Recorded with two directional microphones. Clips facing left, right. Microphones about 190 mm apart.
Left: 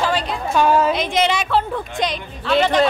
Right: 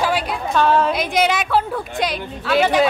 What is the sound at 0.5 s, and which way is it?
Speech, 10° left (ahead or behind).